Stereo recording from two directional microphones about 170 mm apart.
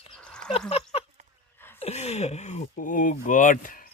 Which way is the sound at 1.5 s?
10° left (ahead or behind).